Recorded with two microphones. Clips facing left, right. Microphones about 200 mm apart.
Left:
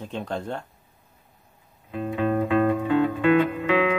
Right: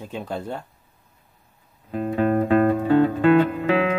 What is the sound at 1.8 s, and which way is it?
Music, 40° right (ahead or behind).